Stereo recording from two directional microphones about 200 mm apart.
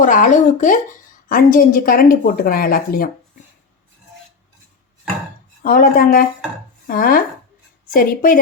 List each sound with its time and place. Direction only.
0.0 s a woman's voice: 40° left (ahead or behind)
5.6 s a woman's voice: 45° left (ahead or behind)